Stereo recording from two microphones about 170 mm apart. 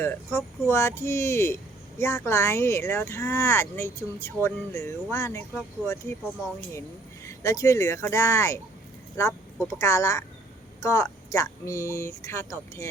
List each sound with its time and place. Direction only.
0.0 s speech: 15° left (ahead or behind)
9.1 s a sound: 15° left (ahead or behind)
9.7 s speech: 20° left (ahead or behind)